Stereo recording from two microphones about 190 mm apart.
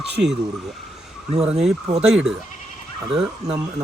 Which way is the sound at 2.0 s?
5° right (ahead or behind).